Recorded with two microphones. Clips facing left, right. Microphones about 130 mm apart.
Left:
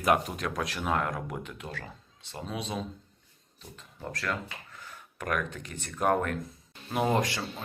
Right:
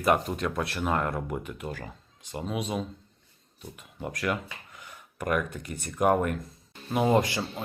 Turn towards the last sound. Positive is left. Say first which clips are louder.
# right 4 dB
turn(degrees=-5)  # may be behind; listen again after turning